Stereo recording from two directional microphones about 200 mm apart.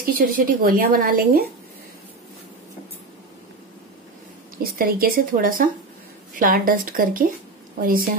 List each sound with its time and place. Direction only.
0.0 s speech: 45° right (ahead or behind)
4.7 s a woman's voice: 45° right (ahead or behind)